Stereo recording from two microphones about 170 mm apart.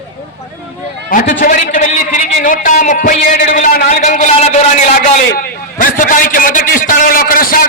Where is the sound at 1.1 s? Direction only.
55° left (ahead or behind).